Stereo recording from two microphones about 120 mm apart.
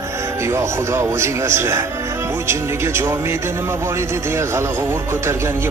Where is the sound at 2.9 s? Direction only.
20° right (ahead or behind).